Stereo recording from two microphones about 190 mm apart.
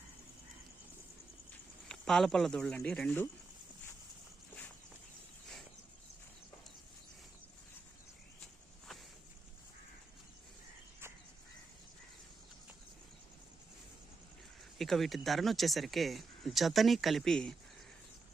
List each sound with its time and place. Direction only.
1.9 s speech: centre (ahead or behind)
14.8 s speech: centre (ahead or behind)